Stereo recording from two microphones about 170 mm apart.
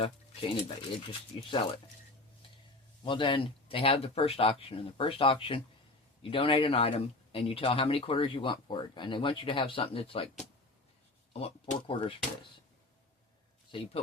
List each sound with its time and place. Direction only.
0.0 s speech: 35° left (ahead or behind)
3.0 s speech: 30° left (ahead or behind)
11.3 s speech: 35° left (ahead or behind)
13.7 s speech: 30° left (ahead or behind)